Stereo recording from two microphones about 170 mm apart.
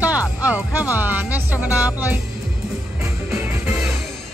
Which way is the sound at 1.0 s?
10° right (ahead or behind).